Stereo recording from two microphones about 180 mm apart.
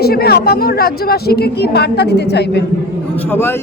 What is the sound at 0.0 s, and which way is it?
Speech, 60° left (ahead or behind).